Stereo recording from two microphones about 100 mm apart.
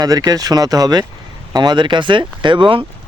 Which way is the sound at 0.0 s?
40° right (ahead or behind).